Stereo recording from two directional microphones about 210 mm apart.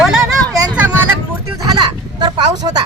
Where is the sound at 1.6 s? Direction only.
20° right (ahead or behind).